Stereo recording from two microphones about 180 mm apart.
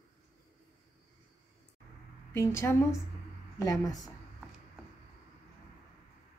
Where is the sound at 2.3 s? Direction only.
15° left (ahead or behind).